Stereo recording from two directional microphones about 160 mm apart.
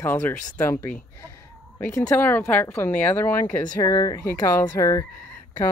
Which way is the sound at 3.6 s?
25° left (ahead or behind).